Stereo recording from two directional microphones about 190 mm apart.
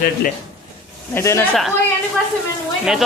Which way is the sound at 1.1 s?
15° left (ahead or behind).